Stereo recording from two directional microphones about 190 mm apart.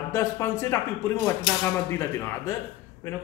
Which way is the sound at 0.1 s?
15° left (ahead or behind).